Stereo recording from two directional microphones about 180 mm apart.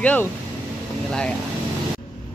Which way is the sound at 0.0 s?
10° left (ahead or behind).